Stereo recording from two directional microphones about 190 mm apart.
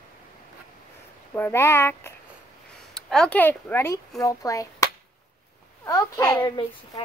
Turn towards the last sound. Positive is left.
turn(degrees=15)  # may be behind; listen again after turning